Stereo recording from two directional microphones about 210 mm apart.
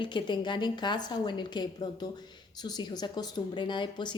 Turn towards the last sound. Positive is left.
turn(degrees=20)  # may be behind; listen again after turning